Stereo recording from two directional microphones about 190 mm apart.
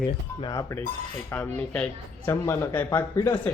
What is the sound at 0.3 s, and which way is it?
A man's voice, 20° left (ahead or behind).